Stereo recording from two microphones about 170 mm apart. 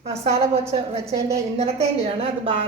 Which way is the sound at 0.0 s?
35° right (ahead or behind).